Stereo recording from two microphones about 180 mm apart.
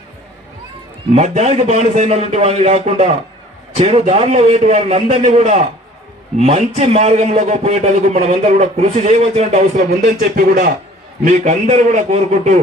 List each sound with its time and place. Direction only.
1.1 s a man's voice: 40° right (ahead or behind)
11.3 s a man's voice: 40° right (ahead or behind)